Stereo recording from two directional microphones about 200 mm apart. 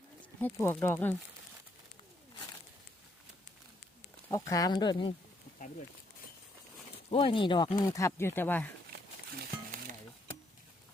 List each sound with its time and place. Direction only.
0.4 s speech: 10° left (ahead or behind)
4.3 s speech: 15° left (ahead or behind)
7.1 s speech: 25° left (ahead or behind)
7.9 s speech: 15° left (ahead or behind)